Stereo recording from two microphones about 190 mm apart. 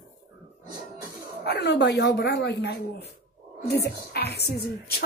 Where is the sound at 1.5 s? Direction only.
65° left (ahead or behind).